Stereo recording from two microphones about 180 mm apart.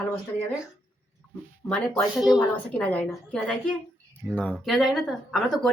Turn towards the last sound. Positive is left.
turn(degrees=0)  # may be behind; listen again after turning